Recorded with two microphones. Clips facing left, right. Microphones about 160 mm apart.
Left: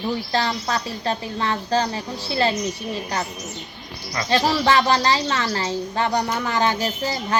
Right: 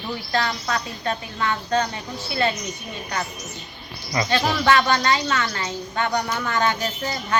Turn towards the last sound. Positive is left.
turn(degrees=30)  # may be behind; listen again after turning